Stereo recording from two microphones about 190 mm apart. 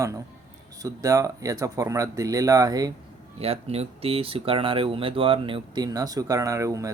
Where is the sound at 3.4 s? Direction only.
30° right (ahead or behind); by 6.9 s 15° right (ahead or behind).